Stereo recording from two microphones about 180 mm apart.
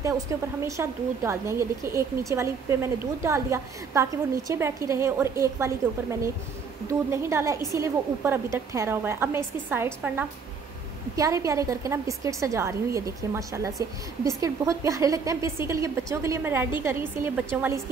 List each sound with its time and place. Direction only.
0.0 s a woman's voice: 15° right (ahead or behind)
7.1 s a woman's voice: 15° right (ahead or behind)